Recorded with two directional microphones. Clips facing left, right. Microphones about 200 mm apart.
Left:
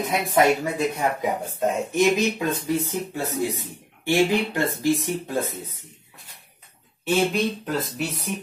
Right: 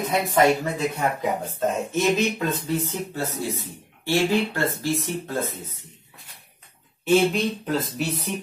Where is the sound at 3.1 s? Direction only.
15° left (ahead or behind).